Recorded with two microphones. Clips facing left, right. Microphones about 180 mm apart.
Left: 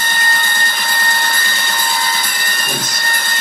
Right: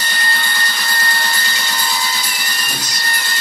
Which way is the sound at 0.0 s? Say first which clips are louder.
Left 2 dB; 50° left (ahead or behind).